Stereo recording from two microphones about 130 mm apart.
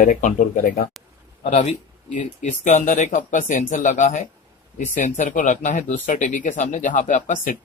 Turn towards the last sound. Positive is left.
turn(degrees=80)